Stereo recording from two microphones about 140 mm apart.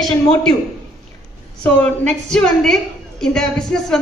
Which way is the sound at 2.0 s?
5° left (ahead or behind).